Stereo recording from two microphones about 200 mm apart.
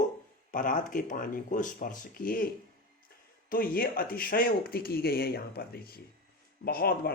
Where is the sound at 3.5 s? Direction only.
45° left (ahead or behind).